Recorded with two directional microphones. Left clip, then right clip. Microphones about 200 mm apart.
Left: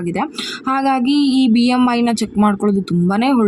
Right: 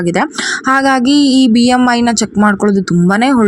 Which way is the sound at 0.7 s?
20° right (ahead or behind).